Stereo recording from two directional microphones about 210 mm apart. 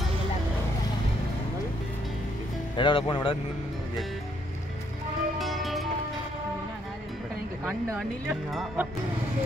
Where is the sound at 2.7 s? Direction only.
25° left (ahead or behind).